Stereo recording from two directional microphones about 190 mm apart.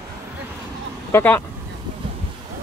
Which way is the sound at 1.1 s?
10° left (ahead or behind).